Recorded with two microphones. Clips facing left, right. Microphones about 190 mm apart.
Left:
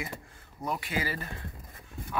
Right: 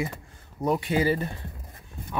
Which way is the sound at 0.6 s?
30° right (ahead or behind).